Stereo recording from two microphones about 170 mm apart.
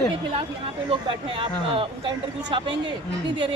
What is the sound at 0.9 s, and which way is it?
A woman's voice, 30° right (ahead or behind).